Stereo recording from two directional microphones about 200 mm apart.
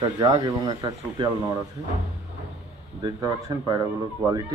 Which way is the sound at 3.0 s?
20° right (ahead or behind).